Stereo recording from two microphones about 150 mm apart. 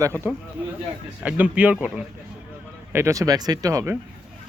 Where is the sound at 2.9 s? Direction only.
20° right (ahead or behind).